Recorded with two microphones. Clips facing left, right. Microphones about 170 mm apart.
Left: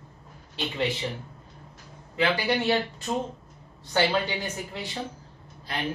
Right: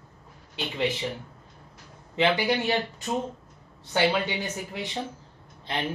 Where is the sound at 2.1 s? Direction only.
20° right (ahead or behind).